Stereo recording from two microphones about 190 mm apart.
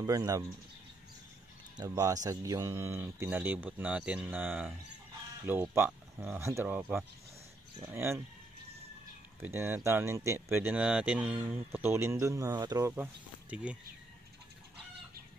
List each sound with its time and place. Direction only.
0.0 s speech: 20° right (ahead or behind)
1.8 s speech: 20° right (ahead or behind)
7.8 s speech: 15° right (ahead or behind)
9.4 s speech: 10° right (ahead or behind)
12.9 s speech: 10° right (ahead or behind)